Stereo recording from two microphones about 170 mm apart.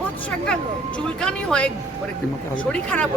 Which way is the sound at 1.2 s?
5° left (ahead or behind).